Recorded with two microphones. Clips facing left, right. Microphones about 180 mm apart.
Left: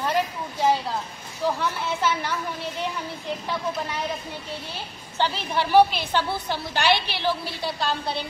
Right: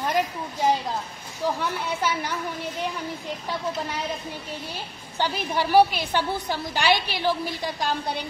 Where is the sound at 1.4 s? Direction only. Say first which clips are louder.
Left 1 dB; 15° right (ahead or behind).